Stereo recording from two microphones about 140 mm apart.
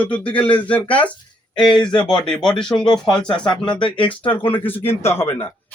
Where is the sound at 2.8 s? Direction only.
35° left (ahead or behind).